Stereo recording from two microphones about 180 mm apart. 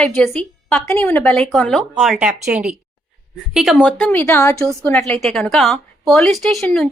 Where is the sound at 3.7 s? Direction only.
10° left (ahead or behind).